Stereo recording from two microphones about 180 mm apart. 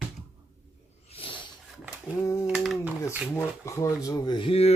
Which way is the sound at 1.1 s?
30° left (ahead or behind).